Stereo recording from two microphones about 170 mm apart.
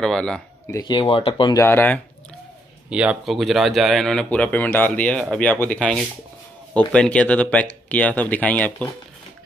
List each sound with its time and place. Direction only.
0.0 s speech: 5° left (ahead or behind)
0.7 s speech: 20° left (ahead or behind)
2.9 s speech: 5° right (ahead or behind); by 8.9 s 10° left (ahead or behind)